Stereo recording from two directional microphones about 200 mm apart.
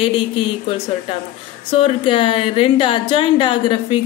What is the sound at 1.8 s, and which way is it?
A woman's voice, 25° left (ahead or behind).